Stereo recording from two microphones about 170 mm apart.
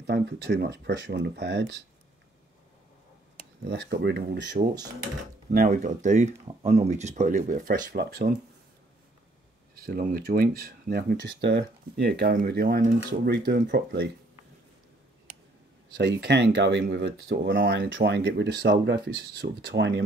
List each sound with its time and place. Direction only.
0.0 s speech: 80° right
3.6 s speech: 75° right (ahead or behind)
5.5 s speech: 55° right (ahead or behind)
8.0 s speech: 70° right (ahead or behind)
9.8 s speech: 60° right (ahead or behind); by 14.1 s 85° right
16.0 s speech: 85° right